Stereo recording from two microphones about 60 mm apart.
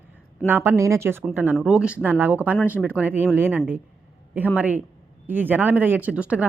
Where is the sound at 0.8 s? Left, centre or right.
Right.